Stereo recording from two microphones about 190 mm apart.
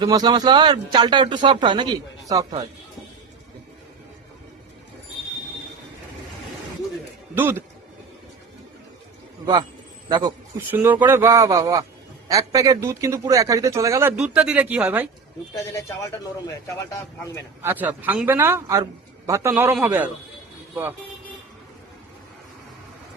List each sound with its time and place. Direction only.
0.0 s speech: 20° right (ahead or behind)
7.3 s a man's voice: 10° right (ahead or behind)
10.1 s a man's voice: 20° right (ahead or behind)
10.7 s a man's voice: 10° right (ahead or behind)
14.2 s speech: 5° right (ahead or behind)
16.7 s speech: 15° left (ahead or behind)
17.6 s a man's voice: 10° right (ahead or behind)